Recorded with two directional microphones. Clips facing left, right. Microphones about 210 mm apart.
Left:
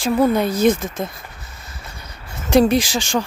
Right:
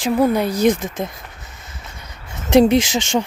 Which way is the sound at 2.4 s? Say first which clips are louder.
Right 2 dB; 20° right (ahead or behind).